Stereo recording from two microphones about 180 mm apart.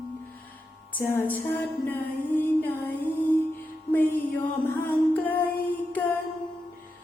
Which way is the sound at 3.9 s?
10° left (ahead or behind).